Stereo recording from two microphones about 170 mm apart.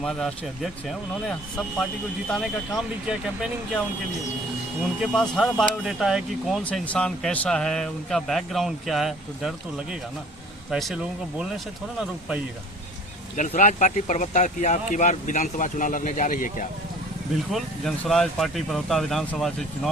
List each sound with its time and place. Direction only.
0.0 s speech: centre (ahead or behind)
5.1 s speech: 5° left (ahead or behind)
13.3 s speech: 45° left (ahead or behind)
17.5 s speech: centre (ahead or behind)